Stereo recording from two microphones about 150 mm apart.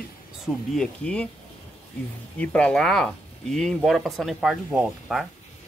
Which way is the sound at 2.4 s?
10° left (ahead or behind).